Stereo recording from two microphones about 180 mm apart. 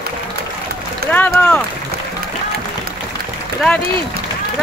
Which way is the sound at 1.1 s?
10° left (ahead or behind).